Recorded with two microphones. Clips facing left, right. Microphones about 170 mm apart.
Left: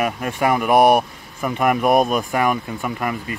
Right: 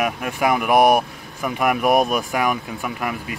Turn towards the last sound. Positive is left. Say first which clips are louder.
# left 2 dB
turn(degrees=-5)  # may be behind; listen again after turning